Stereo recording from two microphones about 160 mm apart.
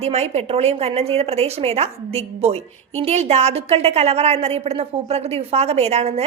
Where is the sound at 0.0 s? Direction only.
40° right (ahead or behind).